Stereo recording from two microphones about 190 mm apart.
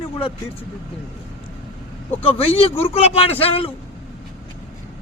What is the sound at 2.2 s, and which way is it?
A man's voice, 30° left (ahead or behind).